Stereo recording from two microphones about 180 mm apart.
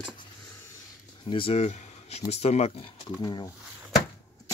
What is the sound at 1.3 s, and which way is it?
Speech, 30° left (ahead or behind).